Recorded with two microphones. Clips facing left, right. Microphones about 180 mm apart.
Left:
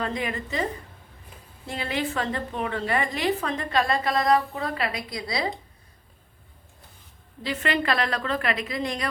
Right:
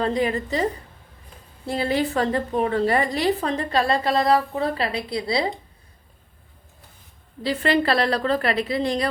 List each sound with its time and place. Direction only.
0.0 s a woman's voice: 35° right (ahead or behind)
7.4 s a woman's voice: 35° right (ahead or behind)